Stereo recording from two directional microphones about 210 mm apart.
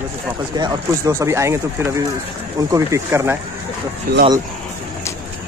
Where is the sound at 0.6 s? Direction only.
15° right (ahead or behind).